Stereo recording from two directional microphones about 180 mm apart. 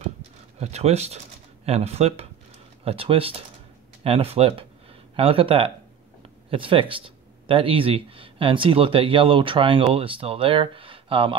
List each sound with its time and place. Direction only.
0.6 s speech: 35° right (ahead or behind)